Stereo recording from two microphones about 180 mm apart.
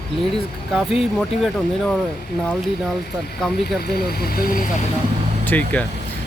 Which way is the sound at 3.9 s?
60° left (ahead or behind).